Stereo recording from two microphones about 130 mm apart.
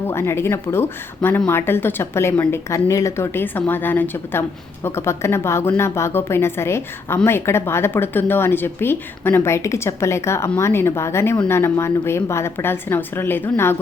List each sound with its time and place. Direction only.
0.1 s a woman's voice: 20° left (ahead or behind)